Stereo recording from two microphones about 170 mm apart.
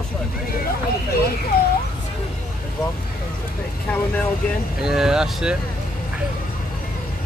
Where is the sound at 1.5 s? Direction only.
60° left (ahead or behind).